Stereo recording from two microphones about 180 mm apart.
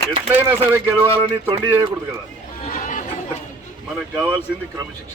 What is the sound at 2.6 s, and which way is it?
Chatter, 50° left (ahead or behind).